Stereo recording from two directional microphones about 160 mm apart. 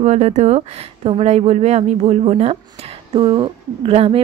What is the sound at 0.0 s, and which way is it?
Speech, 45° right (ahead or behind).